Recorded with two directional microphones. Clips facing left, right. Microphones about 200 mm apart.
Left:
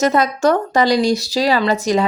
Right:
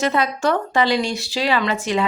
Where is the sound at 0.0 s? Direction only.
45° left (ahead or behind).